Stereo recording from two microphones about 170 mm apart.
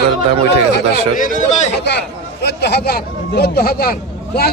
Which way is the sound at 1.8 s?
80° left.